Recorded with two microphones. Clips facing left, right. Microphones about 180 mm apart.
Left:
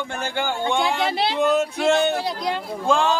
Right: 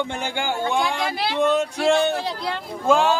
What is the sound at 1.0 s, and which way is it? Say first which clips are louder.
Speech: left 3 dB; 25° left (ahead or behind).